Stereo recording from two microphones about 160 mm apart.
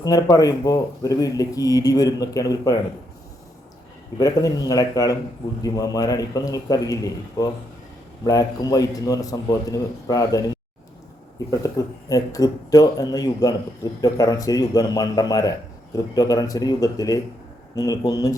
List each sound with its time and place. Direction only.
0.0 s a man's voice: 25° left (ahead or behind)
4.2 s a man's voice: 20° left (ahead or behind)
11.6 s a man's voice: 20° left (ahead or behind)